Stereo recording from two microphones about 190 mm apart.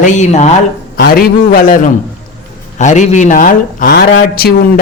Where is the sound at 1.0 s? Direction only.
50° left (ahead or behind).